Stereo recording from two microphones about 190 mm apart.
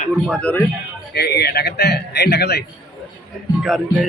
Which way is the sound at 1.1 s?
60° left (ahead or behind).